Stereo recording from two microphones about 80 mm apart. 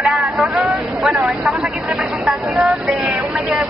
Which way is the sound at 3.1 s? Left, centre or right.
Centre.